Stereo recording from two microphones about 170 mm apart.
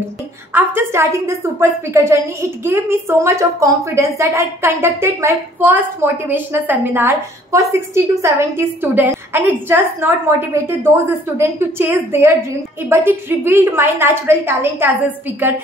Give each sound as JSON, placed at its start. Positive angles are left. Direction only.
{"t": 0.5, "sound": "a woman's voice", "side_deg": -10}